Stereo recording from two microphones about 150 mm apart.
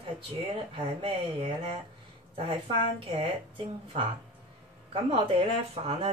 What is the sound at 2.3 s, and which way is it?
Speech, 40° right (ahead or behind).